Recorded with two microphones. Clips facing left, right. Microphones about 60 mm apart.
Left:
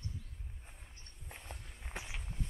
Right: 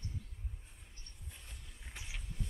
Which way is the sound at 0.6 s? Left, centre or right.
Left.